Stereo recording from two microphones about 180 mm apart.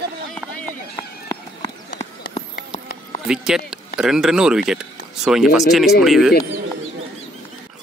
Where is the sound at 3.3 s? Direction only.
5° right (ahead or behind).